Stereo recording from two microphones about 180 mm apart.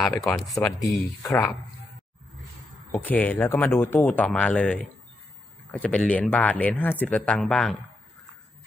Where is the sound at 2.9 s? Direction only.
10° left (ahead or behind).